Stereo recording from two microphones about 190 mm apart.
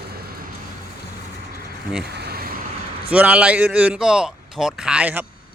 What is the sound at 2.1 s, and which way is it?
Vehicle, 55° right (ahead or behind).